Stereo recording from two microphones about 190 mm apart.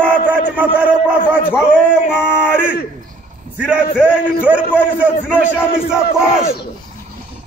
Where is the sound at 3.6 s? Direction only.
5° right (ahead or behind).